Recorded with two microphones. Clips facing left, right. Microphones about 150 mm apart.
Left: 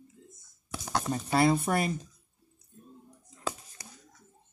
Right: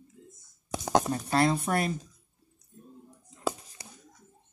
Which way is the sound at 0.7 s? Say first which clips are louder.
Right 7 dB; 20° right (ahead or behind).